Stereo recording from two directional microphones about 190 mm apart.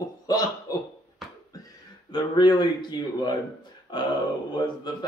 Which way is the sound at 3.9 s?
25° left (ahead or behind).